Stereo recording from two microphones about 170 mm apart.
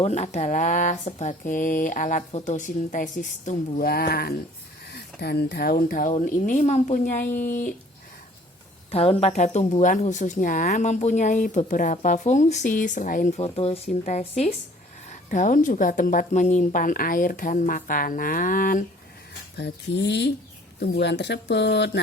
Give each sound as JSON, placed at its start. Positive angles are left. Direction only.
{"t": 0.0, "sound": "a woman's voice", "side_deg": 40}
{"t": 8.9, "sound": "a woman's voice", "side_deg": 35}
{"t": 19.5, "sound": "speech", "side_deg": 85}
{"t": 20.7, "sound": "speech", "side_deg": 75}